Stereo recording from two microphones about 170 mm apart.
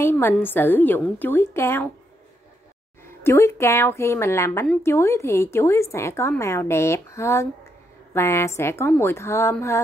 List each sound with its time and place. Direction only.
0.0 s a woman's voice: 15° left (ahead or behind)
3.3 s a woman's voice: 15° left (ahead or behind)